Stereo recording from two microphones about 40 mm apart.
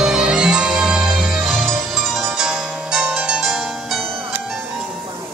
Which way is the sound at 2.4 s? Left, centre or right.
Centre.